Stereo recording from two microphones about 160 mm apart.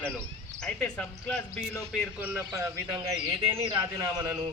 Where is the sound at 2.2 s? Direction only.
10° right (ahead or behind).